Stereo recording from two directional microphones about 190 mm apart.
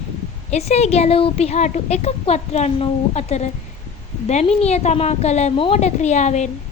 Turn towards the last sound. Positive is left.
turn(degrees=40)  # may be behind; listen again after turning